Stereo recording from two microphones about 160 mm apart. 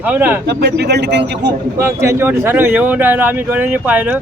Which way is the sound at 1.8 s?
15° right (ahead or behind).